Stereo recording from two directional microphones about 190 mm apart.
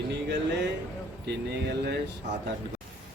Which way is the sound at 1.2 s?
60° right (ahead or behind).